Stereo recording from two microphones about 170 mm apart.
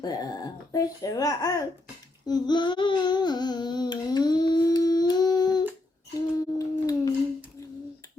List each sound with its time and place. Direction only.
0.0 s speech: 20° left (ahead or behind)
2.2 s humming: 25° left (ahead or behind)
6.1 s a sound: 20° left (ahead or behind)